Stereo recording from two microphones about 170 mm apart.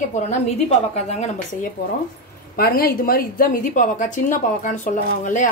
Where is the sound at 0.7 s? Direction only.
45° left (ahead or behind).